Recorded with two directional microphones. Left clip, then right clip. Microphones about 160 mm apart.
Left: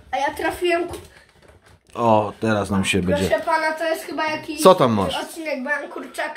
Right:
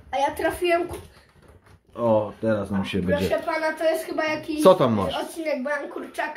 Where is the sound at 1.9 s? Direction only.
45° left (ahead or behind).